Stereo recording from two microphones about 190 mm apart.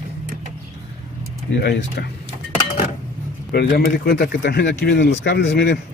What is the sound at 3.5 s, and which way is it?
Speech, 55° left (ahead or behind).